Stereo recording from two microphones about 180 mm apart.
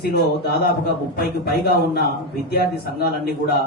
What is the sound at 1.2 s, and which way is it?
A man's voice, 60° left (ahead or behind).